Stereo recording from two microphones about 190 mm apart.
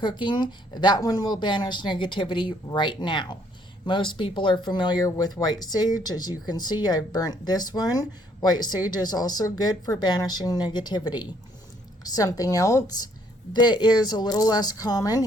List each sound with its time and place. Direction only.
0.0 s speech: 25° left (ahead or behind)